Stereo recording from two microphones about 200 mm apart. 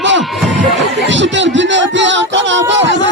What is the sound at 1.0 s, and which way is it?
Music, 65° right (ahead or behind).